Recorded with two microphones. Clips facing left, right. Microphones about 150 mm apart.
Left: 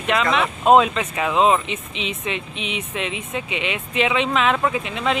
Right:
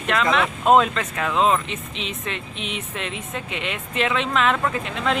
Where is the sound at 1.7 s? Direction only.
40° right (ahead or behind).